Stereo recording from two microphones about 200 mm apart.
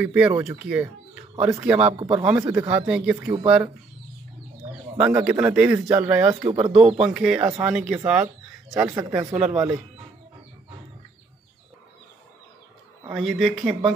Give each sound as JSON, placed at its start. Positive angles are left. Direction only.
{"t": 0.0, "sound": "speech", "side_deg": -5}
{"t": 2.0, "sound": "speech", "side_deg": -25}
{"t": 2.5, "sound": "speech", "side_deg": -10}
{"t": 4.9, "sound": "speech", "side_deg": -5}
{"t": 13.1, "sound": "speech", "side_deg": 0}